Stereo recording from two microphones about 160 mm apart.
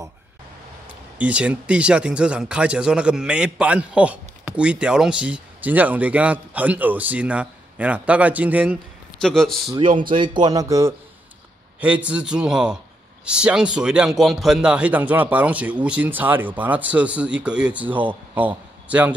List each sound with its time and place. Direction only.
1.1 s speech: 10° right (ahead or behind)
9.2 s a man's voice: 5° left (ahead or behind)
9.8 s speech: 30° right (ahead or behind)
11.8 s a man's voice: 10° right (ahead or behind)